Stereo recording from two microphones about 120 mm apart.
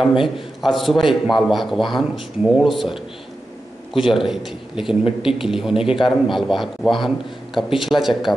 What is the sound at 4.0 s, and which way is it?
A man's voice, centre (ahead or behind).